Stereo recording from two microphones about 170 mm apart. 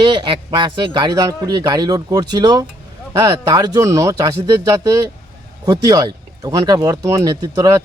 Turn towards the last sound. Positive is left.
turn(degrees=-20)  # may be behind; listen again after turning